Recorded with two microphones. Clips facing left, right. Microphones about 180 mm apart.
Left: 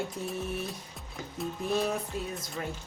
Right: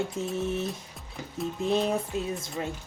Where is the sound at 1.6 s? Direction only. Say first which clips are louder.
Right 4 dB; 20° right (ahead or behind).